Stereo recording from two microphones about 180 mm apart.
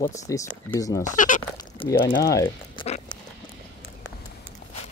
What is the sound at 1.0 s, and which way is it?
Speech, 45° left (ahead or behind).